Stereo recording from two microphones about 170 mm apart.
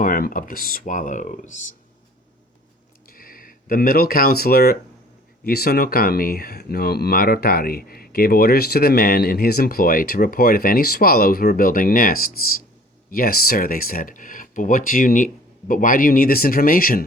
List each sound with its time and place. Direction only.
0.0 s speech: 55° left (ahead or behind)
3.1 s speech: 60° left (ahead or behind)